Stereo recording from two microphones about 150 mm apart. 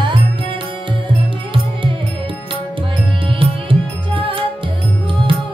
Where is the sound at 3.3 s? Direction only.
35° right (ahead or behind).